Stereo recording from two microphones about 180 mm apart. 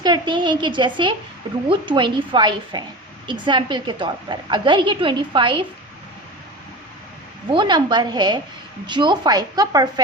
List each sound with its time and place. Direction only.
0.0 s a woman's voice: 25° right (ahead or behind)
7.5 s a woman's voice: 25° right (ahead or behind)